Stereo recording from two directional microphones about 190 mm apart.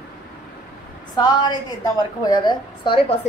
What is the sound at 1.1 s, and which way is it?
A woman's voice, 20° left (ahead or behind).